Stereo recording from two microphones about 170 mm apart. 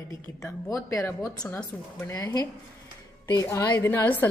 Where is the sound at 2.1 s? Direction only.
20° left (ahead or behind).